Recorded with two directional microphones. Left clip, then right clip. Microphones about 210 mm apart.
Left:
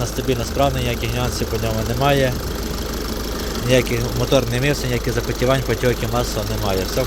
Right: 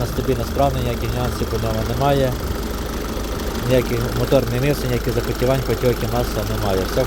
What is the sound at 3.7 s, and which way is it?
Speech, centre (ahead or behind).